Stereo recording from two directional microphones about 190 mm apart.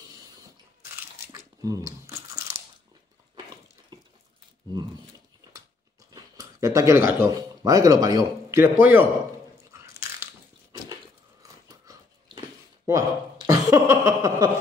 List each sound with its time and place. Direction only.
1.2 s crunch: 15° right (ahead or behind)
6.1 s speech: 20° right (ahead or behind)
11.4 s a sound: 15° right (ahead or behind)